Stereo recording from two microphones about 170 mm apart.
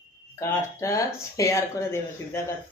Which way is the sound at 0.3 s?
15° left (ahead or behind).